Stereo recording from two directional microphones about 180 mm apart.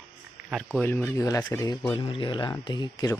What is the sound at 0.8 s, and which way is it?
Speech, 10° left (ahead or behind).